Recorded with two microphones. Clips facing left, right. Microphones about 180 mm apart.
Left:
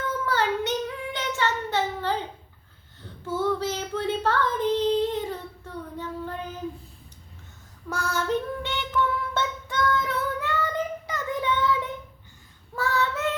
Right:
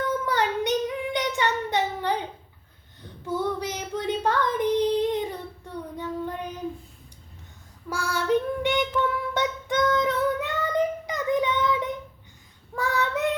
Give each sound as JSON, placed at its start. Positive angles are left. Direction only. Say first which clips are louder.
{"t": 0.3, "sound": "child singing", "louder": "left 1 dB", "side_deg": -15}
{"t": 3.2, "sound": "child singing", "louder": "left 2 dB", "side_deg": -15}
{"t": 7.9, "sound": "child singing", "louder": "right 2 dB", "side_deg": -10}